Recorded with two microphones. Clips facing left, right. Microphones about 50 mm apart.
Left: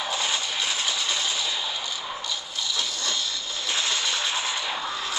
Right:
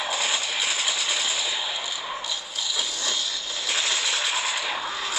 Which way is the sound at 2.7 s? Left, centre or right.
Centre.